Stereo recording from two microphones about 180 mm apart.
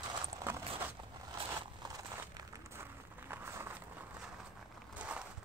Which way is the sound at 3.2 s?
15° right (ahead or behind).